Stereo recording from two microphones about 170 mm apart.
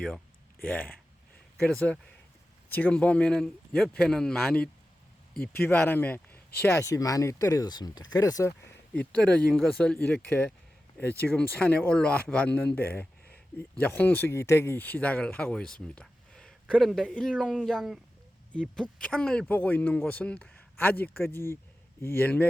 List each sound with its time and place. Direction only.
0.6 s a man's voice: 10° left (ahead or behind)
9.0 s a man's voice: 5° left (ahead or behind)
19.0 s a man's voice: 5° left (ahead or behind)